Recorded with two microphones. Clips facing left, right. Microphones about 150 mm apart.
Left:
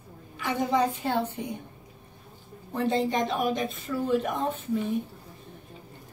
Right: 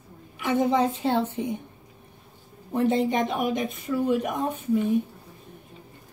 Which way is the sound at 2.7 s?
15° right (ahead or behind).